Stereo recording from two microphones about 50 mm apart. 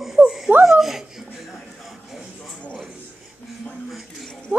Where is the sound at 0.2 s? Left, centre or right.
Right.